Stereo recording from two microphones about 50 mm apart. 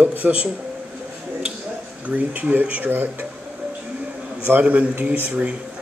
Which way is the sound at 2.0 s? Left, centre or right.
Right.